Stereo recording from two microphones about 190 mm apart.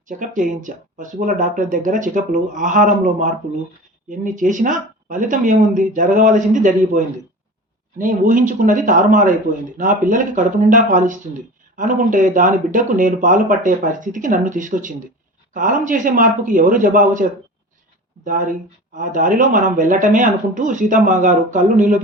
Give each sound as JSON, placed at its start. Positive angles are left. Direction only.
{"t": 0.1, "sound": "speech", "side_deg": -45}
{"t": 18.3, "sound": "speech", "side_deg": -45}